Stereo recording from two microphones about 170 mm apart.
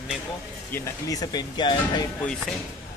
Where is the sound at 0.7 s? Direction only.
20° left (ahead or behind).